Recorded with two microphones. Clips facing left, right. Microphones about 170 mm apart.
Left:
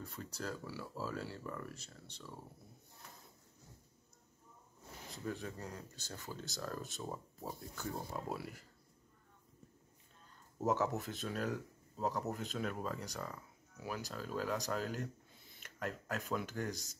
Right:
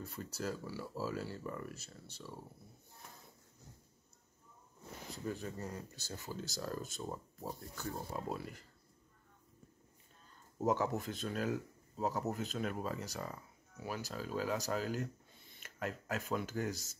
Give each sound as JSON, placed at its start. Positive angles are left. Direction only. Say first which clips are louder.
{"t": 0.0, "sound": "speech", "louder": "right 3 dB", "side_deg": -5}
{"t": 5.1, "sound": "speech", "louder": "right 1 dB", "side_deg": 0}
{"t": 10.6, "sound": "speech", "louder": "right 1 dB", "side_deg": 0}